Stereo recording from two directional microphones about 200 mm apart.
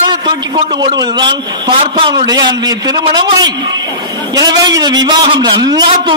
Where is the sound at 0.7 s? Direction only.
20° right (ahead or behind).